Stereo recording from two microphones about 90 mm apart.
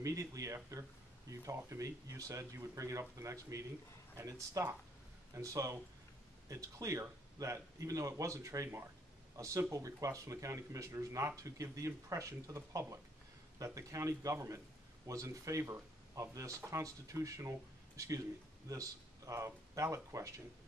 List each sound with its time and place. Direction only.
0.0 s speech: 40° right (ahead or behind)